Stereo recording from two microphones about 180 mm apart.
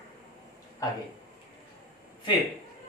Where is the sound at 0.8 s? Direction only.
20° left (ahead or behind).